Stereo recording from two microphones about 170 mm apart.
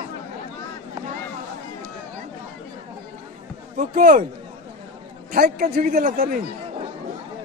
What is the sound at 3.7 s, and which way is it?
Speech, 50° right (ahead or behind).